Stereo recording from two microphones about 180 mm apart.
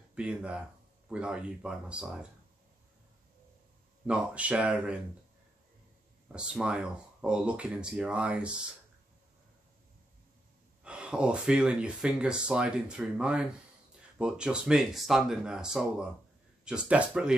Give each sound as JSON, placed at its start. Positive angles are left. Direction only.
{"t": 0.1, "sound": "speech", "side_deg": -5}
{"t": 4.0, "sound": "speech", "side_deg": -5}
{"t": 6.2, "sound": "speech", "side_deg": -5}
{"t": 10.8, "sound": "speech", "side_deg": -5}